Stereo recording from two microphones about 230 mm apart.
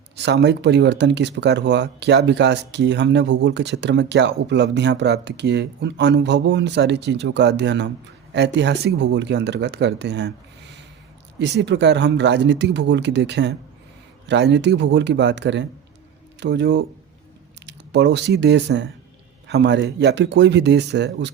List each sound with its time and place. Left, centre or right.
0.2 s speech: right
11.3 s speech: right